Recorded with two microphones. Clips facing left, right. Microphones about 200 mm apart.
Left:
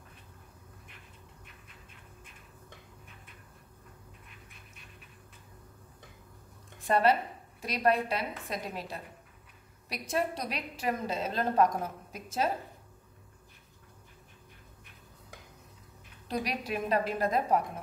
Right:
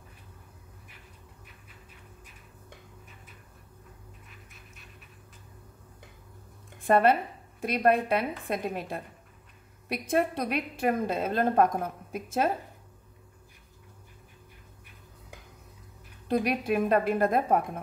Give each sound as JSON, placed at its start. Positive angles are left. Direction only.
{"t": 4.3, "sound": "pant", "side_deg": 0}
{"t": 6.9, "sound": "a woman's voice", "side_deg": -55}
{"t": 16.3, "sound": "a woman's voice", "side_deg": -55}